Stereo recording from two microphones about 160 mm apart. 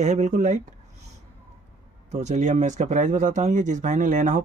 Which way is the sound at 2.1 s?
45° right (ahead or behind).